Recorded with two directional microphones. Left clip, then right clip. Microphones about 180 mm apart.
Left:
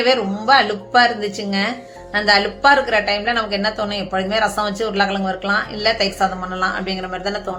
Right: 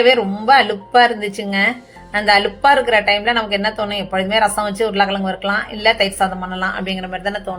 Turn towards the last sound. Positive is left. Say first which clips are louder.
# right 1 dB
turn(degrees=-15)  # may be behind; listen again after turning